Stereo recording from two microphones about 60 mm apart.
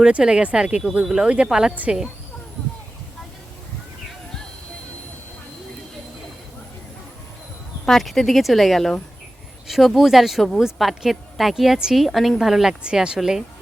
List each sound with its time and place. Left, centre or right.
0.0 s speech: centre
1.7 s speech: right
7.9 s speech: centre